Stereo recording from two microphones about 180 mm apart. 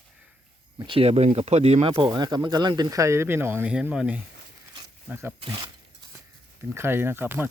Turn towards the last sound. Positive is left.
turn(degrees=-10)  # may be behind; listen again after turning